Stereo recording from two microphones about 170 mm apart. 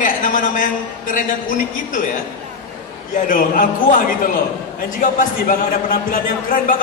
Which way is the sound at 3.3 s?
55° left (ahead or behind).